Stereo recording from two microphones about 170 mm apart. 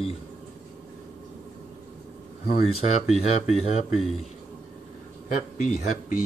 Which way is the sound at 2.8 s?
40° left (ahead or behind).